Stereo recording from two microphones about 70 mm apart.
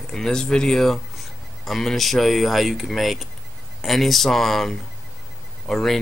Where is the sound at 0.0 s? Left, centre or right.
Centre.